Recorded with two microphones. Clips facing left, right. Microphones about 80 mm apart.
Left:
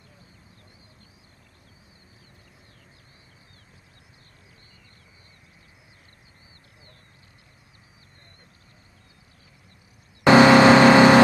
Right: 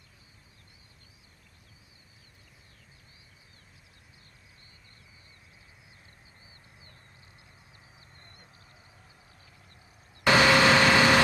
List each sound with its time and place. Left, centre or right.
10.2 s vehicle: left